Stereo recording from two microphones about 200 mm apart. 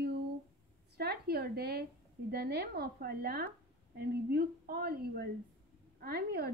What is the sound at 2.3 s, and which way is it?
Speech, 55° right (ahead or behind).